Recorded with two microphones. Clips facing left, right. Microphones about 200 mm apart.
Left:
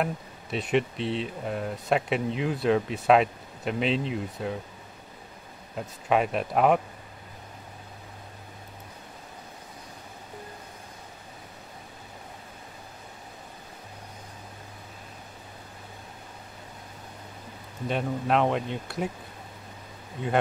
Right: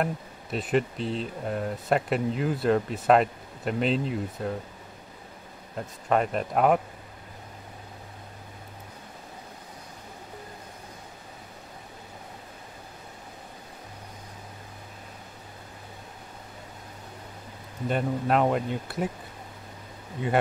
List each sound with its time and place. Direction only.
0.0 s speech: centre (ahead or behind)
5.8 s speech: 5° left (ahead or behind)
17.8 s speech: 5° right (ahead or behind)